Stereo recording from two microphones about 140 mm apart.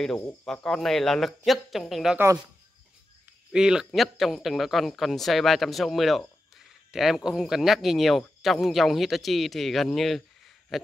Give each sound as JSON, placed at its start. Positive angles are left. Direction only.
{"t": 0.5, "sound": "speech", "side_deg": 5}
{"t": 3.5, "sound": "speech", "side_deg": -5}
{"t": 10.7, "sound": "a sound", "side_deg": 0}